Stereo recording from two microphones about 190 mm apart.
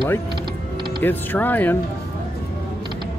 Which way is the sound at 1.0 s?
10° left (ahead or behind).